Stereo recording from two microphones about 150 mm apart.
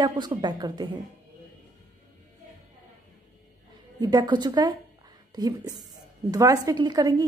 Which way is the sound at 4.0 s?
30° right (ahead or behind).